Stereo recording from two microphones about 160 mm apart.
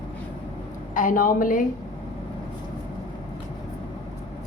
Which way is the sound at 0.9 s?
60° left (ahead or behind).